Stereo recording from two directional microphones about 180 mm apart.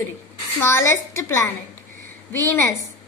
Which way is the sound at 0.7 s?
15° left (ahead or behind).